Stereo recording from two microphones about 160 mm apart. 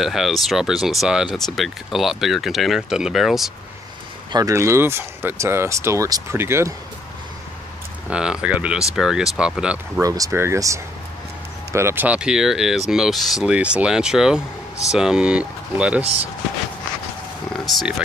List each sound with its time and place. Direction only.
0.0 s speech: centre (ahead or behind)
4.3 s speech: 20° right (ahead or behind)
8.1 s speech: 5° right (ahead or behind)
10.0 s speech: 20° right (ahead or behind)
17.5 s speech: centre (ahead or behind)